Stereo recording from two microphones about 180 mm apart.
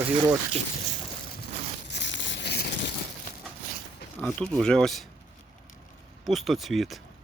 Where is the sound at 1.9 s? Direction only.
85° left; by 2.7 s 65° left (ahead or behind).